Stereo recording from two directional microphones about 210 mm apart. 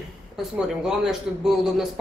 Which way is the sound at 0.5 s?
5° right (ahead or behind).